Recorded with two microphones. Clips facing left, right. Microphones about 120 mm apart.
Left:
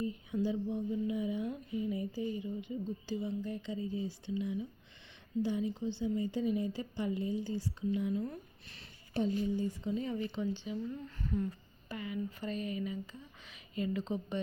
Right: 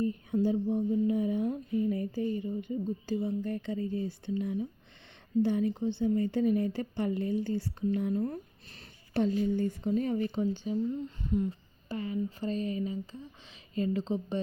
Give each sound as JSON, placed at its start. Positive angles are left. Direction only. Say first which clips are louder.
{"t": 0.0, "sound": "speech", "louder": "right 6 dB", "side_deg": -45}
{"t": 5.4, "sound": "a woman's voice", "louder": "right 6 dB", "side_deg": -60}
{"t": 9.1, "sound": "speech", "louder": "right 5 dB", "side_deg": -65}
{"t": 10.9, "sound": "a woman's voice", "louder": "right 5 dB", "side_deg": -20}
{"t": 11.9, "sound": "speech", "louder": "right 5 dB", "side_deg": -35}